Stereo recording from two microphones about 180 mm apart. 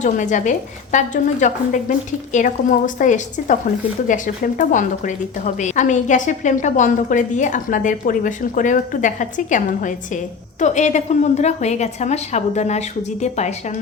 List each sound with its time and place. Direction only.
0.0 s a woman's voice: 45° left (ahead or behind)